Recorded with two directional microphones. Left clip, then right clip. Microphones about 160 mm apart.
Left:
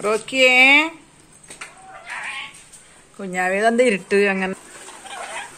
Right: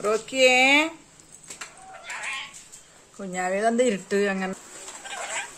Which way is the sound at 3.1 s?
Centre (ahead or behind).